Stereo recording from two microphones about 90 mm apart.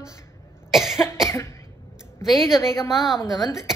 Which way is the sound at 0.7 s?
5° right (ahead or behind).